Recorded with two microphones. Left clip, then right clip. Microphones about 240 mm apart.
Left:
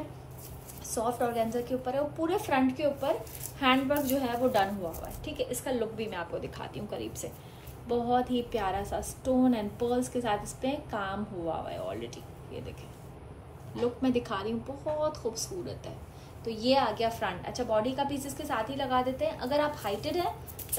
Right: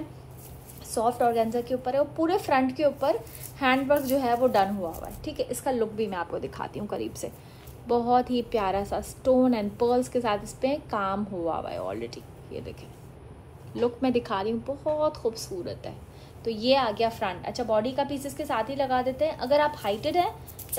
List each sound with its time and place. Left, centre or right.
0.9 s a woman's voice: right
13.7 s a woman's voice: right